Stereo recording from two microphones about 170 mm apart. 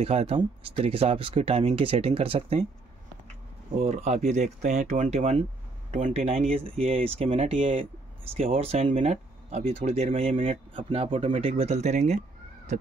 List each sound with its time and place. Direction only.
0.0 s speech: 40° right (ahead or behind)
3.7 s speech: 40° right (ahead or behind)